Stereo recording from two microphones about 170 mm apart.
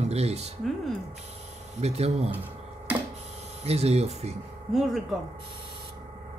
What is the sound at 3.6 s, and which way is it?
Speech, 40° right (ahead or behind).